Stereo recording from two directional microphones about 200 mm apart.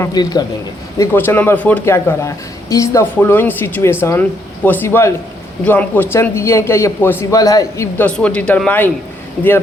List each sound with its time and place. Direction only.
0.0 s a man's voice: 20° left (ahead or behind); by 9.5 s 5° left (ahead or behind)